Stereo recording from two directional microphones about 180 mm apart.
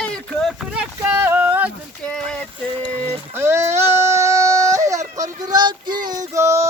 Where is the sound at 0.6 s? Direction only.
5° right (ahead or behind).